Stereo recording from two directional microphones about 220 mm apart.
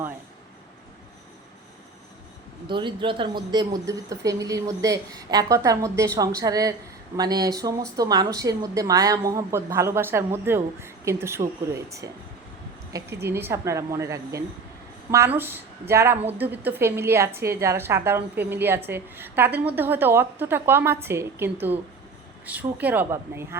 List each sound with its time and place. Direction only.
2.6 s a woman's voice: 20° right (ahead or behind)
13.2 s a woman's voice: 10° right (ahead or behind)